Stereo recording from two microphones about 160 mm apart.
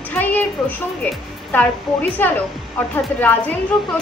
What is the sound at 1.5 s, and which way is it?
A woman's voice, 10° left (ahead or behind).